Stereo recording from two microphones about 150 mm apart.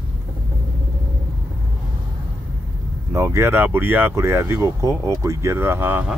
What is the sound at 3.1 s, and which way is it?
Speech, 20° right (ahead or behind).